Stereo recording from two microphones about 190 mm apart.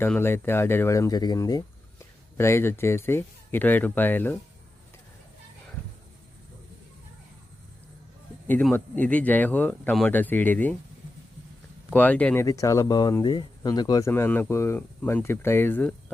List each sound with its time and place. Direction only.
0.0 s speech: 10° left (ahead or behind)
8.4 s speech: 10° left (ahead or behind)
11.9 s speech: 10° left (ahead or behind)
14.1 s speech: 10° left (ahead or behind)